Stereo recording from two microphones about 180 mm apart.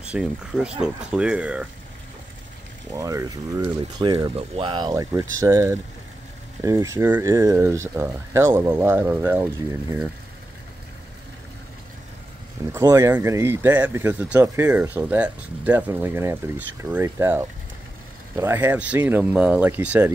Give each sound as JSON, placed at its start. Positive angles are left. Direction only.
{"t": 0.0, "sound": "speech", "side_deg": -5}
{"t": 2.9, "sound": "speech", "side_deg": -20}
{"t": 12.7, "sound": "speech", "side_deg": -15}